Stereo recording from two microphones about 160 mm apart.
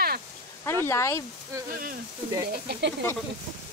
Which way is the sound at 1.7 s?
65° right (ahead or behind).